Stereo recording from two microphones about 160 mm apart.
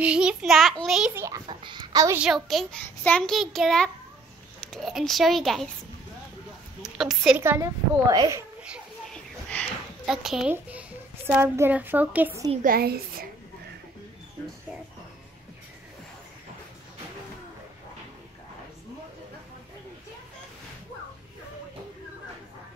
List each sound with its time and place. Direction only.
0.0 s a child's voice: 5° right (ahead or behind)
1.1 s a woman's voice: 20° right (ahead or behind)
1.5 s a sound: 30° right (ahead or behind)
2.1 s a child's voice: 5° right (ahead or behind)
6.8 s a sound: centre (ahead or behind)
7.3 s a woman's voice: 15° right (ahead or behind)
9.1 s a sound: 10° left (ahead or behind)
10.0 s a child's voice: centre (ahead or behind)
12.6 s a child's voice: 70° right (ahead or behind)